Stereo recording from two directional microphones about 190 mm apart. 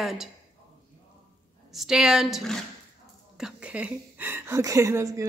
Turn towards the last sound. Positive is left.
turn(degrees=-15)  # may be behind; listen again after turning